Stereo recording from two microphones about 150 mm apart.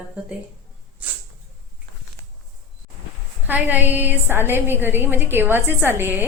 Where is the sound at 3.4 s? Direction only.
10° right (ahead or behind).